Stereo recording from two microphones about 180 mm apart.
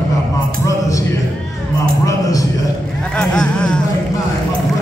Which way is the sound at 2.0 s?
20° left (ahead or behind).